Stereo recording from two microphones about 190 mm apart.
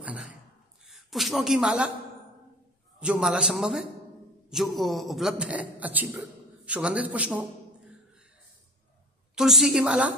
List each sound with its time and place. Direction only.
0.0 s a sound: 5° right (ahead or behind)
0.8 s a man's voice: centre (ahead or behind)
3.0 s a man's voice: 5° right (ahead or behind)
9.3 s a man's voice: centre (ahead or behind)